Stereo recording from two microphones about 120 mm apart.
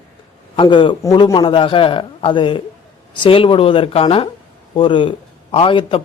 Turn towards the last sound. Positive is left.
turn(degrees=50)  # may be behind; listen again after turning